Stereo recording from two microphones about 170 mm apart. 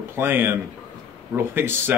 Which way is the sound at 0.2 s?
10° right (ahead or behind).